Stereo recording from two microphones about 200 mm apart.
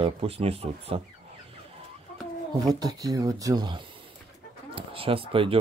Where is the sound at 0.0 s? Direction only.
30° right (ahead or behind).